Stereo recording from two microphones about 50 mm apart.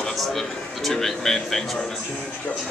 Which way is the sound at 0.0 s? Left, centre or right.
Centre.